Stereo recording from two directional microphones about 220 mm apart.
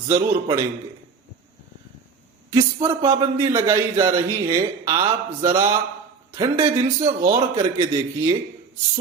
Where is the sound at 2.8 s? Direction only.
10° right (ahead or behind).